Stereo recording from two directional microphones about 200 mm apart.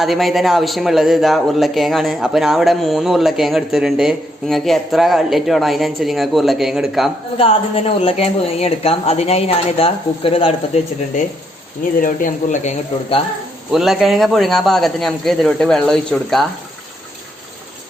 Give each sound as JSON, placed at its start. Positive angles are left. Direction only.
{"t": 0.0, "sound": "a man's voice", "side_deg": 0}
{"t": 7.3, "sound": "a woman's voice", "side_deg": 30}
{"t": 11.9, "sound": "speech", "side_deg": 40}
{"t": 13.7, "sound": "a man's voice", "side_deg": 0}